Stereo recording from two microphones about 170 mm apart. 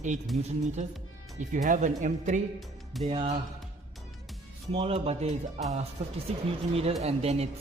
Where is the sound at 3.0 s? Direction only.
35° right (ahead or behind).